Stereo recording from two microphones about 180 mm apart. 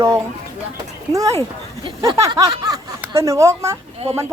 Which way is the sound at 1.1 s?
20° right (ahead or behind).